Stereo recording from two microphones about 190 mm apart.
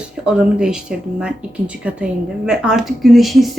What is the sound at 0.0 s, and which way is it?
Speech, 5° right (ahead or behind).